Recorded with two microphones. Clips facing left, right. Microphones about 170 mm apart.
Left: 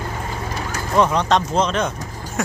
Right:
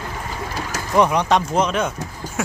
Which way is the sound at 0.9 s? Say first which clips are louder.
Even; 15° right (ahead or behind).